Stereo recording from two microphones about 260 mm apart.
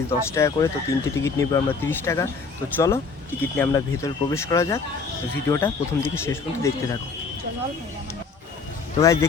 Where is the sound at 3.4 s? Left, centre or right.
Centre.